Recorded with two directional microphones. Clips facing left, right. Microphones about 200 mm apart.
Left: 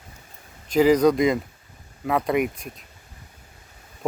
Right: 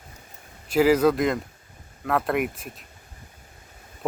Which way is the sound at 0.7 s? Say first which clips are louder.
Left 2 dB; 5° right (ahead or behind).